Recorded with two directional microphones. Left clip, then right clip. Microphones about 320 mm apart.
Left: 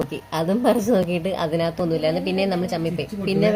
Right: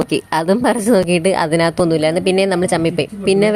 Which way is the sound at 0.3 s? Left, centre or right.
Right.